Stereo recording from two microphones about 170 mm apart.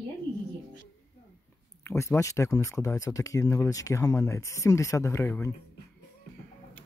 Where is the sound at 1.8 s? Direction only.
15° left (ahead or behind).